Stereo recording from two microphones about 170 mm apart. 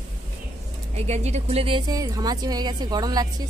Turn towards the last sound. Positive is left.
turn(degrees=-25)  # may be behind; listen again after turning